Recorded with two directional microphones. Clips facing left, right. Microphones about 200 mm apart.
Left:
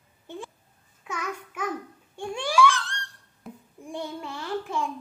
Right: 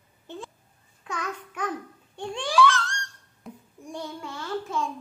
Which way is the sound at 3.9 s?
15° left (ahead or behind).